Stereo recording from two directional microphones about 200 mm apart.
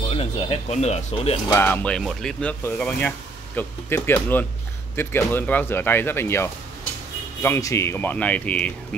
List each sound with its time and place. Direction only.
0.1 s speech: 30° left (ahead or behind)
1.5 s speech: 10° left (ahead or behind)